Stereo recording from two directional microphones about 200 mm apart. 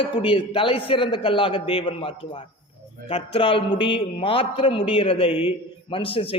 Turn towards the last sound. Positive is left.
turn(degrees=30)  # may be behind; listen again after turning